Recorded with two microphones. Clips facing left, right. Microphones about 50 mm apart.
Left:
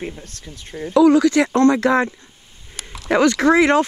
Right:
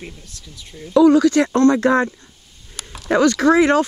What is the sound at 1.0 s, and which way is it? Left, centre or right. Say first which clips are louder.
Speech: right 1 dB; left.